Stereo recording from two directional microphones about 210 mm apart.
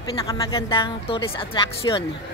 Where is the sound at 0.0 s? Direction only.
20° left (ahead or behind).